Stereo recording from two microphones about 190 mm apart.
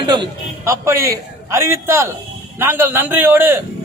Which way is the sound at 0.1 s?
20° right (ahead or behind).